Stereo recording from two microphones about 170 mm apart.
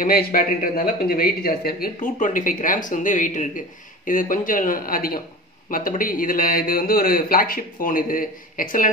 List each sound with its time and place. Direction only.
0.0 s a man's voice: 60° left (ahead or behind)